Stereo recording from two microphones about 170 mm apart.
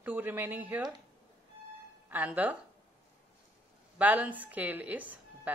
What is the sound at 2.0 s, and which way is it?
Speech, 10° right (ahead or behind).